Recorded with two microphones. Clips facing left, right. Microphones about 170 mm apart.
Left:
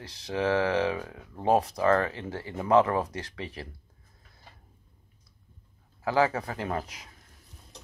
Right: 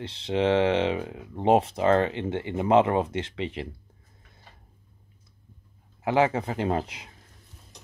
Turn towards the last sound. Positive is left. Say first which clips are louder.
# right 6 dB
turn(degrees=-25)  # may be behind; listen again after turning